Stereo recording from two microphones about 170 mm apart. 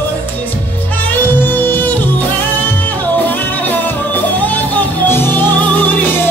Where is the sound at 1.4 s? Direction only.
10° left (ahead or behind).